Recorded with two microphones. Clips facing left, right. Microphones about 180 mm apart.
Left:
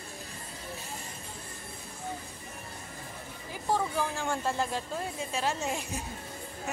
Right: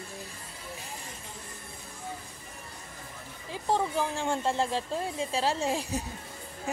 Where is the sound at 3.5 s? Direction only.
25° right (ahead or behind).